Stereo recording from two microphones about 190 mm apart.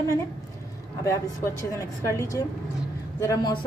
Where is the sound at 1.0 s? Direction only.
15° left (ahead or behind).